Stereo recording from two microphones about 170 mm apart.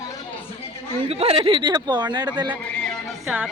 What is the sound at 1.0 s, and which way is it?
Speech, 35° right (ahead or behind).